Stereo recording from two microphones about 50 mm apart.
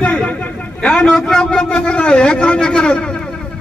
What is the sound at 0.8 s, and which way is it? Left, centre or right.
A man's voice, centre.